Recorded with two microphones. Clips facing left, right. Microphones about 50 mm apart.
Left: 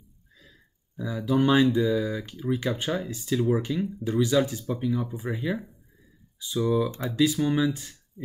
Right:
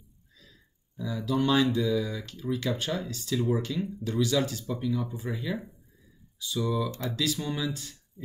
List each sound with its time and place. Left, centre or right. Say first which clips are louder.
1.0 s speech: left 4 dB; centre